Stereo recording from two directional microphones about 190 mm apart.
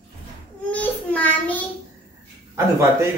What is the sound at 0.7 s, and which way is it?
Child singing, 5° left (ahead or behind).